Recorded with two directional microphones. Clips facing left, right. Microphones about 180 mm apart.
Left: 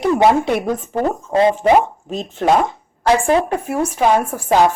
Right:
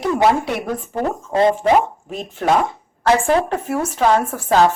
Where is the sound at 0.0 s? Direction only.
20° left (ahead or behind).